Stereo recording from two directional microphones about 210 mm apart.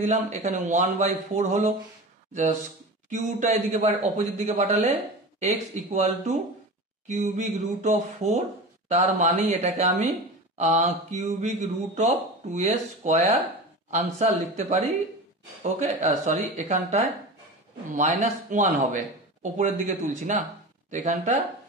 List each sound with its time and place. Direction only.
0.0 s a man's voice: 35° right (ahead or behind)
3.1 s a man's voice: 35° right (ahead or behind)
7.1 s a man's voice: 35° right (ahead or behind)